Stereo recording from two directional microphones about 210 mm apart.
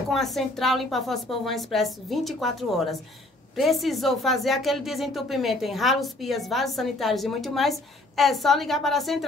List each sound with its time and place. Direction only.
0.1 s speech: centre (ahead or behind)